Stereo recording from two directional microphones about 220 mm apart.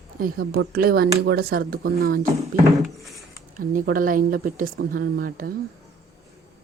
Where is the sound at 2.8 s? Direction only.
Centre (ahead or behind).